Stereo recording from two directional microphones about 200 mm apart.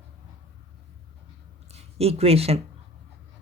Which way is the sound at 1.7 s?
30° right (ahead or behind).